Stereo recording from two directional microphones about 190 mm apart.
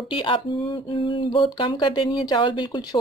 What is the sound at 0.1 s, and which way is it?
Speech, 25° left (ahead or behind).